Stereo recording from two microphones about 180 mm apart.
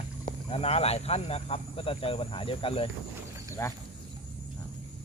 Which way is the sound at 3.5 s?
15° left (ahead or behind).